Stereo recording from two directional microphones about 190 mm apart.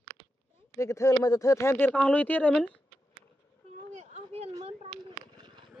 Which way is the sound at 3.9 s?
40° right (ahead or behind).